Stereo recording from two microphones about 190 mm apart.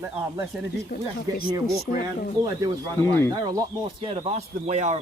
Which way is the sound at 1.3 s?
20° right (ahead or behind).